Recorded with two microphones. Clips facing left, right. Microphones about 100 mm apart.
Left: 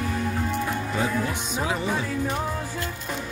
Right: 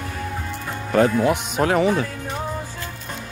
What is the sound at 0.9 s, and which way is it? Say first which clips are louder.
Speech: right 13 dB; 60° right (ahead or behind).